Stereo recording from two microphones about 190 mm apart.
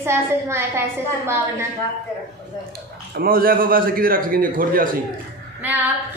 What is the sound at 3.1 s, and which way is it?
A man's voice, 50° right (ahead or behind).